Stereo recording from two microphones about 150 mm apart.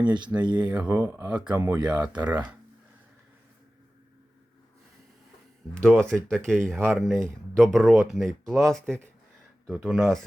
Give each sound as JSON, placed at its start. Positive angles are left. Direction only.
{"t": 0.0, "sound": "speech", "side_deg": -30}
{"t": 0.7, "sound": "speech", "side_deg": -10}
{"t": 5.7, "sound": "speech", "side_deg": 5}
{"t": 9.6, "sound": "speech", "side_deg": 0}